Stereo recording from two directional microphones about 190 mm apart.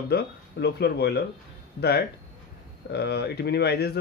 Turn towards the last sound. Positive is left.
turn(degrees=60)  # may be behind; listen again after turning